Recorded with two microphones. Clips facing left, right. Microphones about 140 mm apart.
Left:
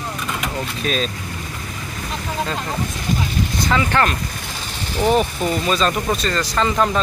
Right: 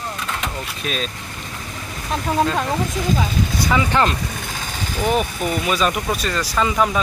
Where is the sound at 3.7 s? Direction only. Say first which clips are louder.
Even; 15° right (ahead or behind).